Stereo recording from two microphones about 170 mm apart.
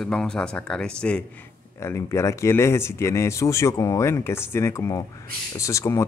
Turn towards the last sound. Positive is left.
turn(degrees=20)  # may be behind; listen again after turning